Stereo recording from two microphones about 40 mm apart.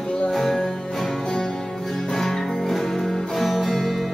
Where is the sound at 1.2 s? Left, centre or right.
Centre.